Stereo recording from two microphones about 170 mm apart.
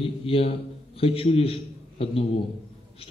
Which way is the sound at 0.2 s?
35° left (ahead or behind).